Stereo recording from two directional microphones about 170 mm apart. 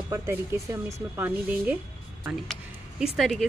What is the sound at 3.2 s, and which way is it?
Speech, 5° left (ahead or behind).